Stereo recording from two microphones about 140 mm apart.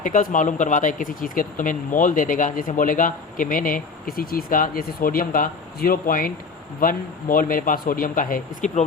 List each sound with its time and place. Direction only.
0.0 s speech: 70° left (ahead or behind); by 6.3 s 90° left
6.7 s speech: 75° left (ahead or behind)